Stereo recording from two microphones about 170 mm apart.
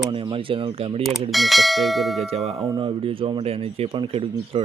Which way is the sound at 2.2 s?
40° right (ahead or behind).